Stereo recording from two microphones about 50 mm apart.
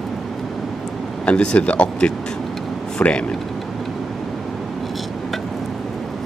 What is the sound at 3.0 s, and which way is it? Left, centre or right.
Speech, left.